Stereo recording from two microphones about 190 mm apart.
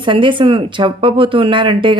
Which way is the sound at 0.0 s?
25° right (ahead or behind).